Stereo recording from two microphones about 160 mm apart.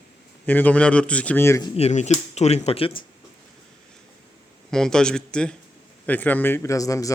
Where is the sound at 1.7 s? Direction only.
45° left (ahead or behind).